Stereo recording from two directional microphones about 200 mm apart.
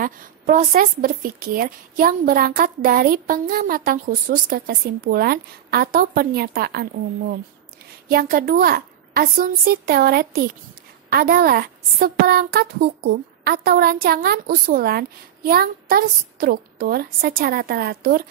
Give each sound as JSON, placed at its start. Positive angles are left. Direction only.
{"t": 0.0, "sound": "speech", "side_deg": -45}